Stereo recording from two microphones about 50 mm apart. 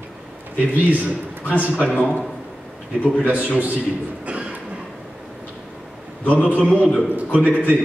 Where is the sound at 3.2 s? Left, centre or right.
Right.